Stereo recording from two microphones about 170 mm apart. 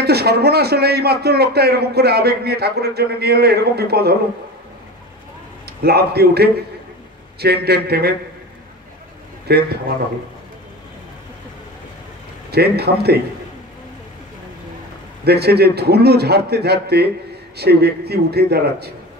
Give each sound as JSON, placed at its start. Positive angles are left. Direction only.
{"t": 0.0, "sound": "speech", "side_deg": -70}
{"t": 5.8, "sound": "speech", "side_deg": -70}
{"t": 9.5, "sound": "speech", "side_deg": -70}
{"t": 12.4, "sound": "speech", "side_deg": -70}
{"t": 15.2, "sound": "speech", "side_deg": -70}